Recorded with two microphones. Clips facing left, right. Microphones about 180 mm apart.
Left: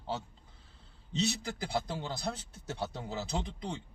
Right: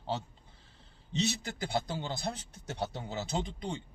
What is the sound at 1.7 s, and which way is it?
Speech, 20° right (ahead or behind).